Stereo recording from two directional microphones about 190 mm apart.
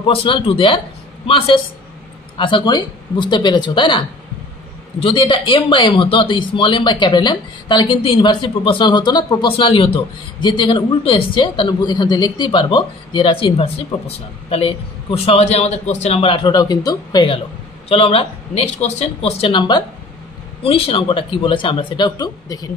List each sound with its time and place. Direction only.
0.0 s speech: 30° left (ahead or behind)
5.0 s speech: 25° left (ahead or behind)